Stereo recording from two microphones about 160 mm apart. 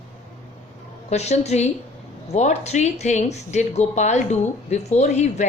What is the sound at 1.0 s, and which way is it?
Speech, 45° left (ahead or behind).